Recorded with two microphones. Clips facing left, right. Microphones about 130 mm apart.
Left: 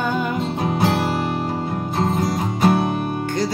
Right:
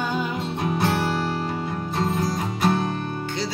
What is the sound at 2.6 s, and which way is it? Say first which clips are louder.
Music: left 5 dB; 25° left (ahead or behind).